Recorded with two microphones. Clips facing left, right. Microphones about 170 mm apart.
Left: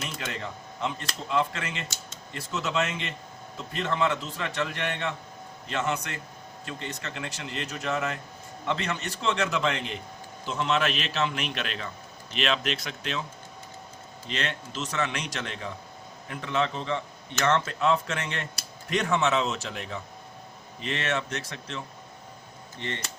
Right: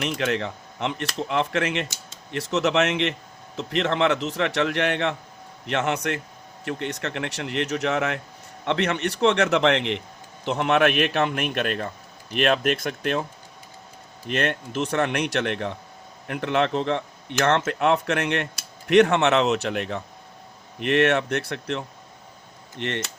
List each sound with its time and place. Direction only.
0.0 s speech: 70° right (ahead or behind); by 13.2 s 55° right (ahead or behind)
14.3 s speech: 55° right (ahead or behind)